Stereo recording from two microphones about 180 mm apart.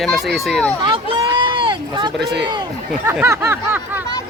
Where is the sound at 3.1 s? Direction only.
15° right (ahead or behind).